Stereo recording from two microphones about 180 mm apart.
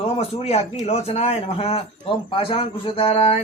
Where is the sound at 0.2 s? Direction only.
35° left (ahead or behind).